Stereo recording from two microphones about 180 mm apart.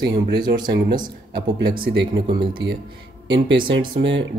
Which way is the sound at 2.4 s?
25° right (ahead or behind).